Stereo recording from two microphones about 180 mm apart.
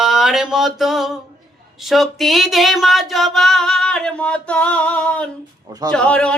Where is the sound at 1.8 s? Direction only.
Centre (ahead or behind).